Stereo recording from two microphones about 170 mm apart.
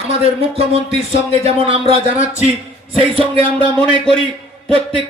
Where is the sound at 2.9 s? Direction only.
35° right (ahead or behind).